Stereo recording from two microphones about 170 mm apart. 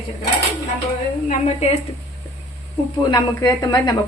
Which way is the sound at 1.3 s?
40° left (ahead or behind).